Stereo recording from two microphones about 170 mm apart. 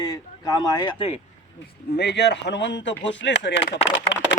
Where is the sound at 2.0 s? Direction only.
85° left.